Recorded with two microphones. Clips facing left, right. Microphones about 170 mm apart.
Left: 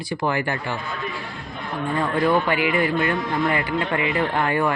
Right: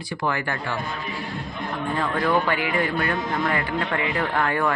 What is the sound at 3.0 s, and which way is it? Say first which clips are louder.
Speech: left 2 dB; 15° left (ahead or behind).